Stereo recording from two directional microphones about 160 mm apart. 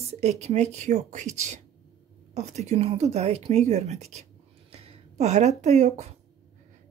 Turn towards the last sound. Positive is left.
turn(degrees=-45)  # may be behind; listen again after turning